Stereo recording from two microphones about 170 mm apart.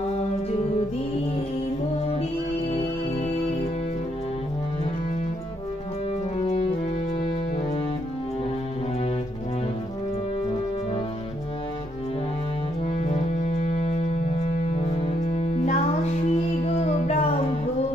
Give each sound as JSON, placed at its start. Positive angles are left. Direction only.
{"t": 12.9, "sound": "music", "side_deg": 40}